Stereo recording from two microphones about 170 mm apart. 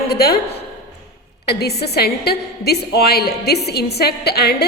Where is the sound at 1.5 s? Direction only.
70° left (ahead or behind).